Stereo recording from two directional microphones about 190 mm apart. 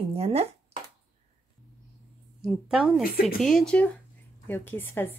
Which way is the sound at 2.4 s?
5° right (ahead or behind).